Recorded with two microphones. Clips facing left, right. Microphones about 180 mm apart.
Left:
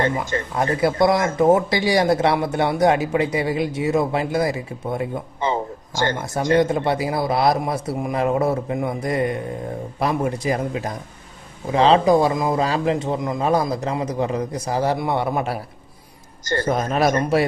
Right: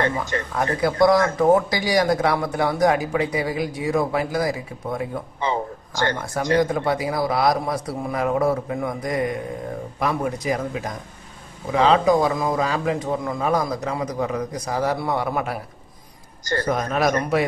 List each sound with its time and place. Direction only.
0.6 s speech: 25° left (ahead or behind)